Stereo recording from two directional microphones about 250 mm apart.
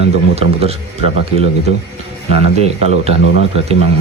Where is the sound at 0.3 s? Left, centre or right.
Right.